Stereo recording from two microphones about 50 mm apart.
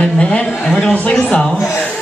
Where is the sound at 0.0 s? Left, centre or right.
Left.